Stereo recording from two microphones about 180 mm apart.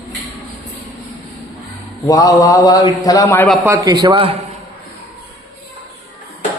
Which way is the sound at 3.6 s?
15° right (ahead or behind).